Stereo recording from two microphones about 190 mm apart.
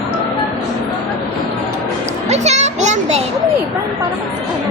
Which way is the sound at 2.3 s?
35° right (ahead or behind).